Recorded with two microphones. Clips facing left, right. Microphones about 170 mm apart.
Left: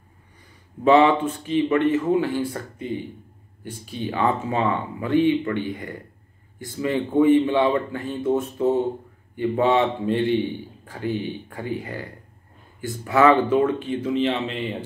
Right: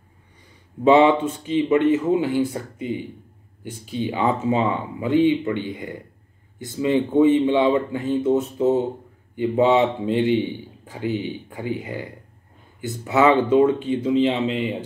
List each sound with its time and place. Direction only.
0.8 s speech: 20° right (ahead or behind)